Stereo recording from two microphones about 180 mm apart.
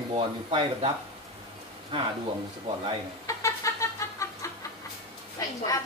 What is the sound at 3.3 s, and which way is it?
Chicken, 15° left (ahead or behind).